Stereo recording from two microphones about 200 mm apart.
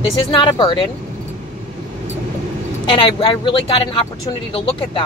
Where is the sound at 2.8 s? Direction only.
25° left (ahead or behind).